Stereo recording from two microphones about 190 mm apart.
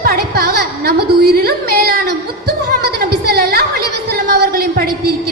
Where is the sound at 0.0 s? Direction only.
50° right (ahead or behind).